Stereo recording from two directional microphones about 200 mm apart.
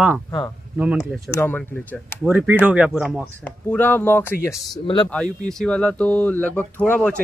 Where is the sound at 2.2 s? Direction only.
10° right (ahead or behind).